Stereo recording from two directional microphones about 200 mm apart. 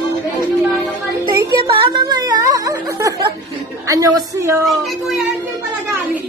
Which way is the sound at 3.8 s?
15° right (ahead or behind).